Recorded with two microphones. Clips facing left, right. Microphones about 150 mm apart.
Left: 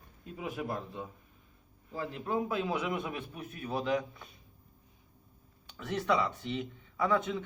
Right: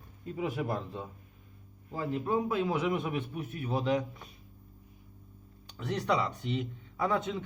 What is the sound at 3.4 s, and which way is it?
Speech, 25° right (ahead or behind).